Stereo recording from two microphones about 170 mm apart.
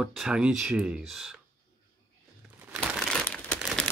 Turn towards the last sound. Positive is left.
turn(degrees=5)  # may be behind; listen again after turning